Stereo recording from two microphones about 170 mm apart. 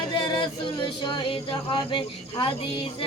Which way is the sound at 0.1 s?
30° left (ahead or behind).